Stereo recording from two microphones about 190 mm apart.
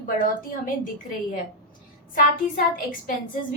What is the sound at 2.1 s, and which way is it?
A woman's voice, 45° left (ahead or behind).